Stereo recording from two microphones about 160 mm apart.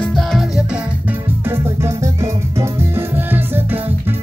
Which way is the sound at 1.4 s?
15° right (ahead or behind).